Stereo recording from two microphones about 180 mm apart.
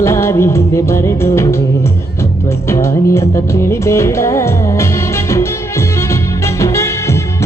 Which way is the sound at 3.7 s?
15° left (ahead or behind).